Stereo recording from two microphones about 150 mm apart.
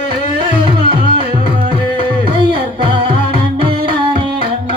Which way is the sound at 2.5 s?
35° right (ahead or behind).